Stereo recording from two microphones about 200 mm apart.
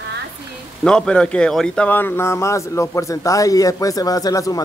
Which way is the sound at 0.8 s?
5° left (ahead or behind).